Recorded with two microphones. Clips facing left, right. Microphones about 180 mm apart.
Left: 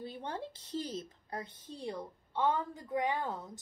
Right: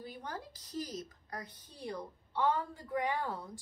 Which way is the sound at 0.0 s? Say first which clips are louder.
Left 3 dB; 25° left (ahead or behind).